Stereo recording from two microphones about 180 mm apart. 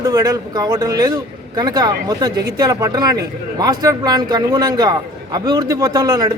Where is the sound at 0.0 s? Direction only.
20° right (ahead or behind).